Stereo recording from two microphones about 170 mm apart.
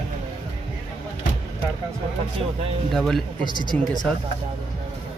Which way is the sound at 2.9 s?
Centre (ahead or behind).